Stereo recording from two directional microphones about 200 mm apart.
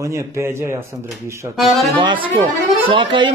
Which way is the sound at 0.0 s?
15° right (ahead or behind).